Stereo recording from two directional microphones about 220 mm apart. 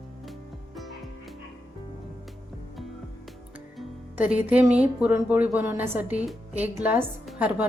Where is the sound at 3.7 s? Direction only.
5° right (ahead or behind).